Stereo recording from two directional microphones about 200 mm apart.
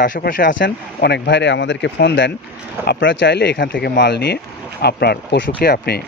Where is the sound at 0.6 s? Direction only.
55° left (ahead or behind).